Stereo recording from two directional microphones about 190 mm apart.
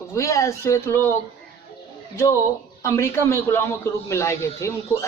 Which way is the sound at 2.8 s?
15° left (ahead or behind).